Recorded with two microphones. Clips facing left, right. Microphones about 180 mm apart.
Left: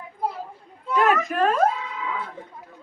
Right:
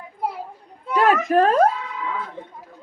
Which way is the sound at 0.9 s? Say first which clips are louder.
Right 3 dB; 35° right (ahead or behind).